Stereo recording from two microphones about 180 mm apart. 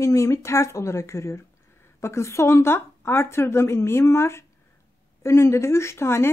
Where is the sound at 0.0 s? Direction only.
15° left (ahead or behind).